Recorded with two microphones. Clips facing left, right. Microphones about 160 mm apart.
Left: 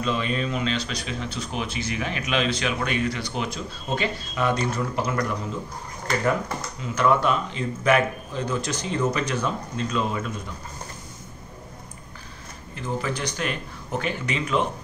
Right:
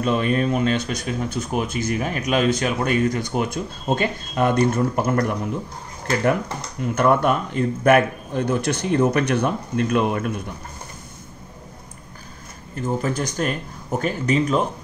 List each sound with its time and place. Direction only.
0.0 s speech: 50° right (ahead or behind)
6.8 s speech: 55° right (ahead or behind)
12.7 s speech: 45° right (ahead or behind)